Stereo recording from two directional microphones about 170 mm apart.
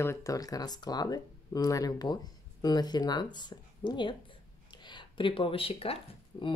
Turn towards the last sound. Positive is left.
turn(degrees=30)  # may be behind; listen again after turning